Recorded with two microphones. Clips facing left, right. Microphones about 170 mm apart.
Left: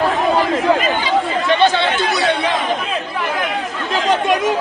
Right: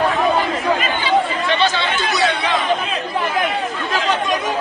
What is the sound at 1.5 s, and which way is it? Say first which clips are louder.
Chatter: left 5 dB; 55° left (ahead or behind).